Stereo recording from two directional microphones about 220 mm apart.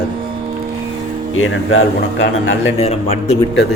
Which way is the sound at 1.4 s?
65° left (ahead or behind).